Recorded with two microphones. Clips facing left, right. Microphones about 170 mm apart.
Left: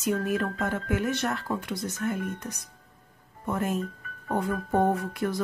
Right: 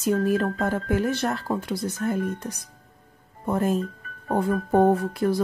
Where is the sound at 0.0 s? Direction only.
35° right (ahead or behind).